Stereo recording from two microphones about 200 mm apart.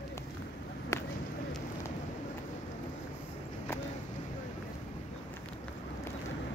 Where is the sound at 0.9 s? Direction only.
15° left (ahead or behind).